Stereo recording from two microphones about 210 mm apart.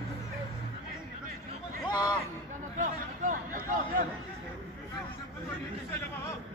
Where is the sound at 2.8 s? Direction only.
40° right (ahead or behind).